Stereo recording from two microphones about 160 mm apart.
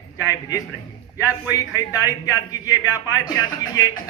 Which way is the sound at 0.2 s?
20° left (ahead or behind).